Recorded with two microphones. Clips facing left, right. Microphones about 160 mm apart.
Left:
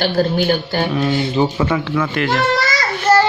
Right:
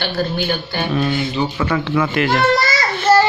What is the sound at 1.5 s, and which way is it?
Speech, 20° left (ahead or behind).